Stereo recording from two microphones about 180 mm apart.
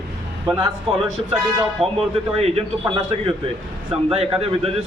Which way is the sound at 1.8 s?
35° right (ahead or behind).